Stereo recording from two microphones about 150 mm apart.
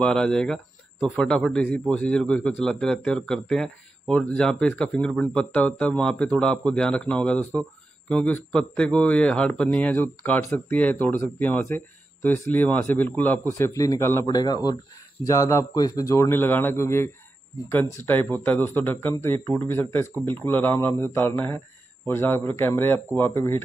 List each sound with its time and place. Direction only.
0.0 s a man's voice: 5° left (ahead or behind)